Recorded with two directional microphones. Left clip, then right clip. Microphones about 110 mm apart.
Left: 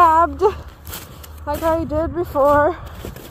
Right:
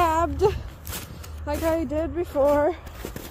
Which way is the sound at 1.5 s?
20° right (ahead or behind).